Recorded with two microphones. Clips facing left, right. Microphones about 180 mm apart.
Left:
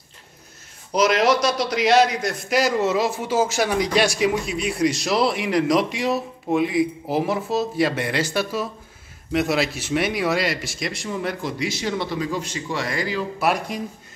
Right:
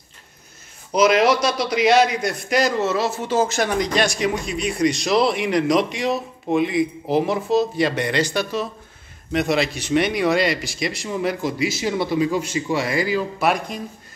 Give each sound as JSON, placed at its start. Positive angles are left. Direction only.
{"t": 0.9, "sound": "a man's voice", "side_deg": 0}
{"t": 13.4, "sound": "a man's voice", "side_deg": 5}